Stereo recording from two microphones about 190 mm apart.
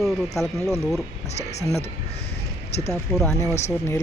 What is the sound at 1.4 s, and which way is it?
Speech, 35° left (ahead or behind).